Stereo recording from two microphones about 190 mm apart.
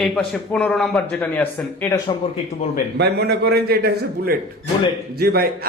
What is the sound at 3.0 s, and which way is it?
A man's voice, 60° right (ahead or behind).